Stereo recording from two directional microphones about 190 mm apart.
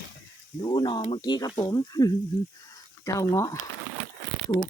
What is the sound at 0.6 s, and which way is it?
Speech, 25° left (ahead or behind).